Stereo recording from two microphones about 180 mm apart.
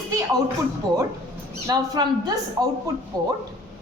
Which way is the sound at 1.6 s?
20° right (ahead or behind).